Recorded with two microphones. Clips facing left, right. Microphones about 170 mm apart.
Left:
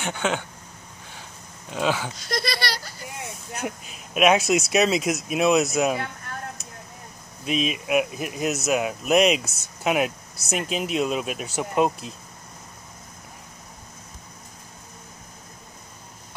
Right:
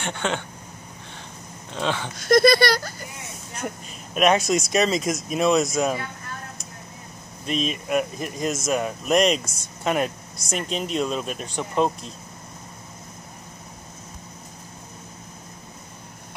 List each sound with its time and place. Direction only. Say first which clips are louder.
0.0 s speech: left 1 dB; 5° left (ahead or behind)
1.7 s speech: left 2 dB; 5° left (ahead or behind)
2.1 s speech: right 12 dB; 50° right (ahead or behind)
3.6 s speech: even; 5° left (ahead or behind)
7.4 s speech: left 1 dB; 5° left (ahead or behind)